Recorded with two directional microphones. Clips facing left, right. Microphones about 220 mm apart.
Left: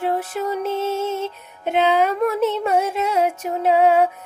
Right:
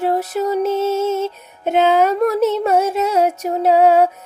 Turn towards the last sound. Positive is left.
turn(degrees=-40)  # may be behind; listen again after turning